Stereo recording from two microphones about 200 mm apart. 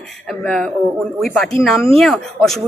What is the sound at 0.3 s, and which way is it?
Speech, 5° left (ahead or behind).